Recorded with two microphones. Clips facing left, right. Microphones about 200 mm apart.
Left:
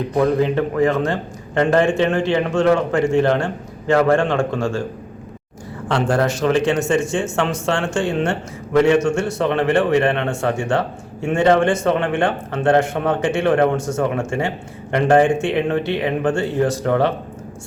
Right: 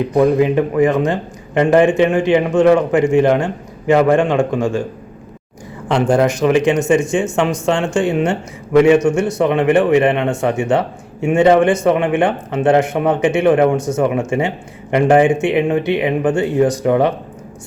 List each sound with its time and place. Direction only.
0.2 s speech: 15° right (ahead or behind)
5.9 s speech: 15° right (ahead or behind)